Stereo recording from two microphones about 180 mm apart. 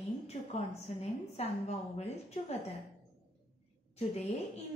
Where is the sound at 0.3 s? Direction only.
40° left (ahead or behind).